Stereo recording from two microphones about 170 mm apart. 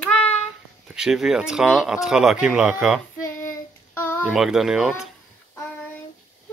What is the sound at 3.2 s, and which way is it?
Child singing, 15° left (ahead or behind).